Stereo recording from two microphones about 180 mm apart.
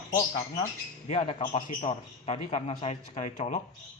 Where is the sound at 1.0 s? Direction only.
35° left (ahead or behind).